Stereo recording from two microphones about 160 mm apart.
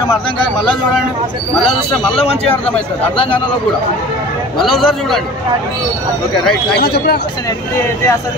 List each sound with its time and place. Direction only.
2.1 s speech: 10° left (ahead or behind)
4.6 s a man's voice: centre (ahead or behind)
6.8 s speech: 90° left